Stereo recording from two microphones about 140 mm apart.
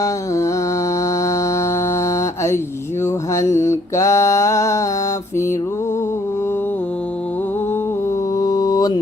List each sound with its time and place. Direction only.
0.0 s music: 20° left (ahead or behind)
3.0 s mantra: 20° left (ahead or behind)
8.4 s mantra: 25° left (ahead or behind)